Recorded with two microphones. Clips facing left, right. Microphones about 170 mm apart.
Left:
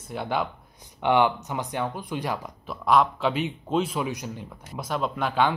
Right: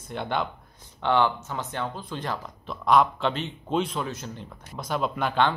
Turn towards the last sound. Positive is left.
turn(degrees=5)  # may be behind; listen again after turning